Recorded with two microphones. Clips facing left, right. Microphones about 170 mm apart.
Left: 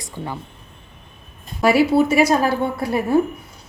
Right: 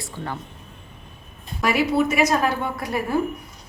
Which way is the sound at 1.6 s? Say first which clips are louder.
Left 5 dB; 30° left (ahead or behind).